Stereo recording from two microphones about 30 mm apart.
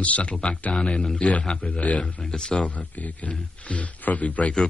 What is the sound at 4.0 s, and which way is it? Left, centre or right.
Speech, left.